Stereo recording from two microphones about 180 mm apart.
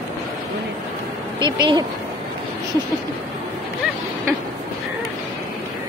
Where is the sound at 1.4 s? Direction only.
25° right (ahead or behind).